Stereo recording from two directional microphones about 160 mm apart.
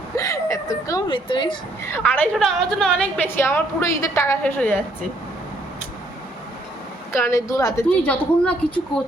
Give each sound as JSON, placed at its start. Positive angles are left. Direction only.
{"t": 0.2, "sound": "chuckle", "side_deg": 20}
{"t": 1.9, "sound": "a woman's voice", "side_deg": 10}
{"t": 7.1, "sound": "a woman's voice", "side_deg": 15}
{"t": 7.9, "sound": "a woman's voice", "side_deg": 10}